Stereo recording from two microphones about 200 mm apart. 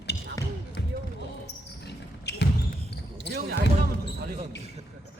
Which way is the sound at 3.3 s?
50° right (ahead or behind).